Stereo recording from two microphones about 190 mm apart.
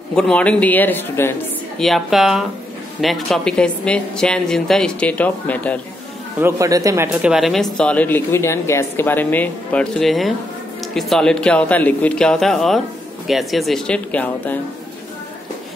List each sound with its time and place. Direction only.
0.1 s speech: 5° left (ahead or behind)
1.8 s a woman's voice: centre (ahead or behind)
6.4 s a woman's voice: 15° right (ahead or behind); by 14.6 s 10° left (ahead or behind)